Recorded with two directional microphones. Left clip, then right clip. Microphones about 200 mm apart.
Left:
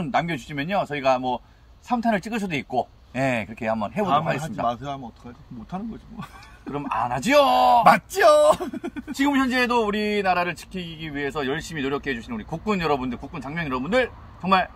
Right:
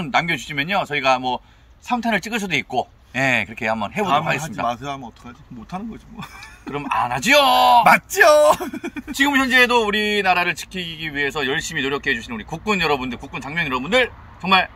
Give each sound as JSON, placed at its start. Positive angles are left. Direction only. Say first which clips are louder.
{"t": 0.0, "sound": "speech", "louder": "right 4 dB", "side_deg": -10}
{"t": 4.6, "sound": "speech", "louder": "even", "side_deg": 15}
{"t": 6.7, "sound": "speech", "louder": "right 4 dB", "side_deg": -10}
{"t": 7.8, "sound": "speech", "louder": "right 3 dB", "side_deg": 20}
{"t": 9.2, "sound": "speech", "louder": "right 7 dB", "side_deg": -10}